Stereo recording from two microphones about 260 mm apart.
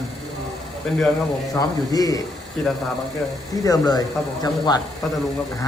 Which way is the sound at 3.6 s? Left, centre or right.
Centre.